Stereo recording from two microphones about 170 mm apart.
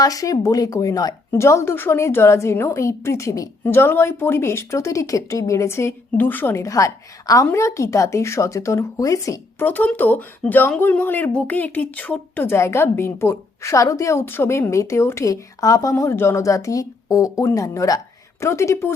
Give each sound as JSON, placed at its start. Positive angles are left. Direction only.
{"t": 0.0, "sound": "speech", "side_deg": 20}